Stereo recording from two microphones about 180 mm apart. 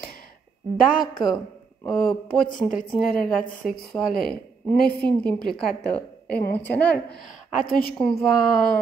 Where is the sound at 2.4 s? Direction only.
50° left (ahead or behind).